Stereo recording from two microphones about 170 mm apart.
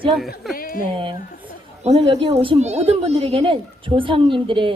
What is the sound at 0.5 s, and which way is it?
Speech, 55° left (ahead or behind).